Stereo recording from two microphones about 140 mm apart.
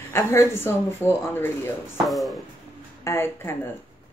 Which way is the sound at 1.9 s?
Centre (ahead or behind).